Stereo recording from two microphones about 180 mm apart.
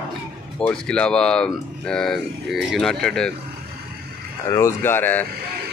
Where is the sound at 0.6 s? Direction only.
5° left (ahead or behind).